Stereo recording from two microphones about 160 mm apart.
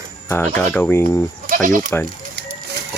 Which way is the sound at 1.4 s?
60° right (ahead or behind).